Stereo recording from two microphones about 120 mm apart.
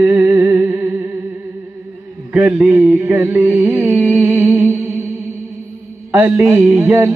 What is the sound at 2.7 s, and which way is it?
Music, 15° right (ahead or behind).